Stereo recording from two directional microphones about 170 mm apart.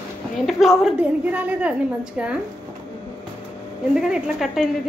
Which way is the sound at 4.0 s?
5° right (ahead or behind).